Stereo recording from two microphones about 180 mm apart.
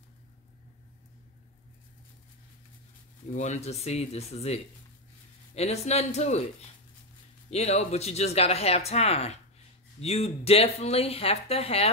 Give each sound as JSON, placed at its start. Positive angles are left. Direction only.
{"t": 3.3, "sound": "speech", "side_deg": 40}
{"t": 7.5, "sound": "speech", "side_deg": 35}